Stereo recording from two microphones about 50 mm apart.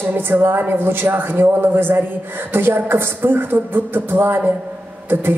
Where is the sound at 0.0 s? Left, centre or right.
Right.